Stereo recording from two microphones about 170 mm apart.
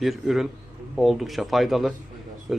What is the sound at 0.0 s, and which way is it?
A man's voice, centre (ahead or behind).